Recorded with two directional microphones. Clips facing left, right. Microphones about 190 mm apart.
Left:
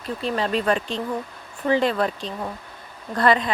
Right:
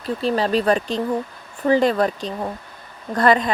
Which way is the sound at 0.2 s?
35° right (ahead or behind).